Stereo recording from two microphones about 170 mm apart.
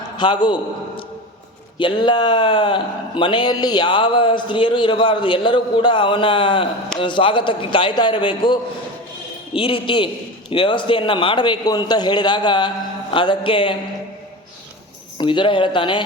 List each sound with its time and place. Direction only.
0.2 s a man's voice: 25° left (ahead or behind)
15.2 s a man's voice: 30° left (ahead or behind)